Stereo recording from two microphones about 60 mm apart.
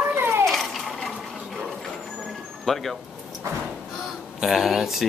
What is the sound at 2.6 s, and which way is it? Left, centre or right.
Speech, centre.